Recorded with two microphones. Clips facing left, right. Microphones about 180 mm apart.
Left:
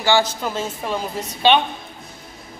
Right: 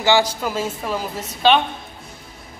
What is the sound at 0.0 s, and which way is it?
A man's voice, 15° right (ahead or behind).